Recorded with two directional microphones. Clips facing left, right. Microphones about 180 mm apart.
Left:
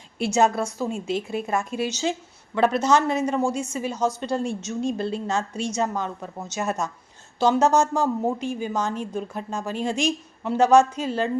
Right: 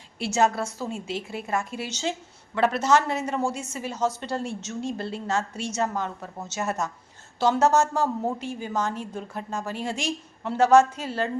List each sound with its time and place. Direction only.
0.2 s a woman's voice: 15° left (ahead or behind)
7.3 s a woman's voice: 15° left (ahead or behind)